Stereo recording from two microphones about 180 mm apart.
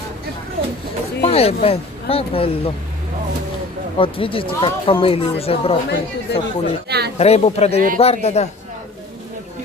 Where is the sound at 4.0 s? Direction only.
30° left (ahead or behind).